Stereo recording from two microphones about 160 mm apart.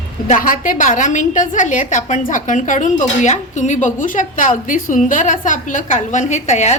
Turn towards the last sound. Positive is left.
turn(degrees=45)  # may be behind; listen again after turning